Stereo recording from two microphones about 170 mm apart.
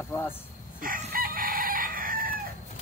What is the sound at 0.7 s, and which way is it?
Chicken, 55° right (ahead or behind).